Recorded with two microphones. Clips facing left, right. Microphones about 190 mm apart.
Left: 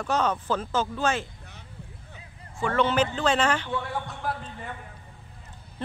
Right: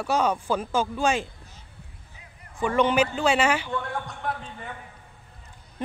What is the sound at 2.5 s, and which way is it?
A man's voice, 15° right (ahead or behind).